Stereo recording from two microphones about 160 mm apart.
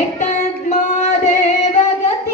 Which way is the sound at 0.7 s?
45° left (ahead or behind).